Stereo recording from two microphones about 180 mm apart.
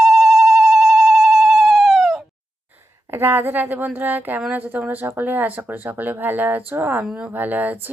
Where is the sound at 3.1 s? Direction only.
10° right (ahead or behind).